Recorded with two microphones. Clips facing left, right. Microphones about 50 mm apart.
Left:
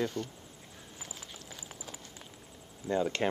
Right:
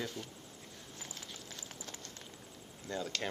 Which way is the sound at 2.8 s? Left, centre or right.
Left.